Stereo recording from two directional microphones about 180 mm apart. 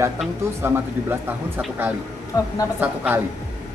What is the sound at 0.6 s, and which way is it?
Speech, 10° right (ahead or behind).